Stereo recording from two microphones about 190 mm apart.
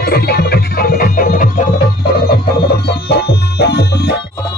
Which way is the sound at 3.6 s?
60° left (ahead or behind).